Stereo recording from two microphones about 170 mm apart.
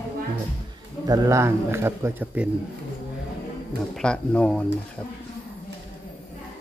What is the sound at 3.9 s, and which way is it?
Speech, 5° left (ahead or behind).